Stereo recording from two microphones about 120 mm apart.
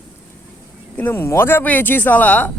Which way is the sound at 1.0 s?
15° left (ahead or behind).